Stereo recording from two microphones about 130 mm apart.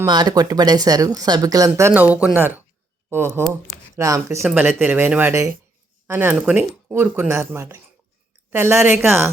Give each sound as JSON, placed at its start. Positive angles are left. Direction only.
{"t": 0.1, "sound": "speech", "side_deg": -30}
{"t": 1.9, "sound": "speech", "side_deg": -10}
{"t": 4.4, "sound": "speech", "side_deg": -15}